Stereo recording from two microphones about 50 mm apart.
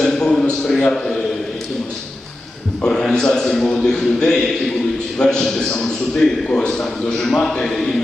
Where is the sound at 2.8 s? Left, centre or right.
Centre.